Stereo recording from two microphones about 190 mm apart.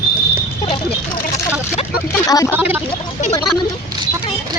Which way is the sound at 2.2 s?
20° left (ahead or behind).